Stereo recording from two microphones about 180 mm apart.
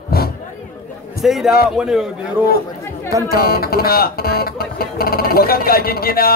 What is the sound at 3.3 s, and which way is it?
Speech, 55° left (ahead or behind).